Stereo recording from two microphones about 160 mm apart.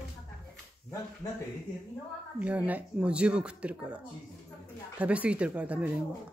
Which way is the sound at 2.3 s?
10° right (ahead or behind).